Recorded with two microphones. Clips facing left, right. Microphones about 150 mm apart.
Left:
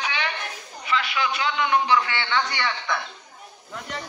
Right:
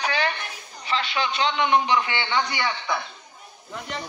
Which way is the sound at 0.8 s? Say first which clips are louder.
Even; 30° right (ahead or behind).